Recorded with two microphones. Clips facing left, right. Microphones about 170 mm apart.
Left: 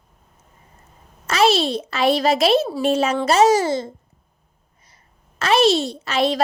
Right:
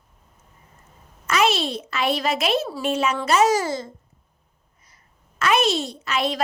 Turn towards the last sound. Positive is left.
turn(degrees=30)  # may be behind; listen again after turning